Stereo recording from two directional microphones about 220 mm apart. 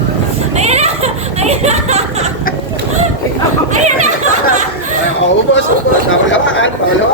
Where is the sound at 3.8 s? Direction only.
35° right (ahead or behind).